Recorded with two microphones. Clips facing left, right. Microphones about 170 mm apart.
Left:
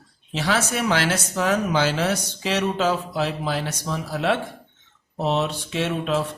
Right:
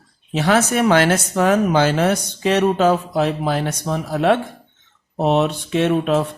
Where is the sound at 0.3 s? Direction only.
55° right (ahead or behind).